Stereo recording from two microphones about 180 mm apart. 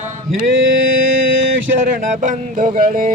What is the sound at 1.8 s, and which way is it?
Music, 50° right (ahead or behind).